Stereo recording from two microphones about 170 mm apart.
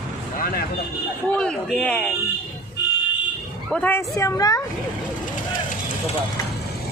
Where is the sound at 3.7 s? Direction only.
10° left (ahead or behind).